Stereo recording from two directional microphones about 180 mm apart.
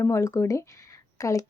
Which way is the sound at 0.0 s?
15° left (ahead or behind).